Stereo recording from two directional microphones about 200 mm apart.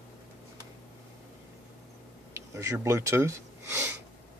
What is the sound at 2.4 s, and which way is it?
Speech, 15° right (ahead or behind).